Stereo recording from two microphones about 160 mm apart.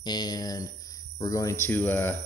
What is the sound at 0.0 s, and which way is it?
Speech, 25° left (ahead or behind).